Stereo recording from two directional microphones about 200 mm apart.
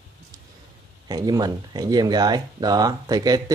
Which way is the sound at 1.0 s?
20° right (ahead or behind).